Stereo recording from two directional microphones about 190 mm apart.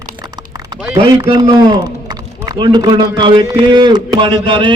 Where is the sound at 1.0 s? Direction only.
25° right (ahead or behind).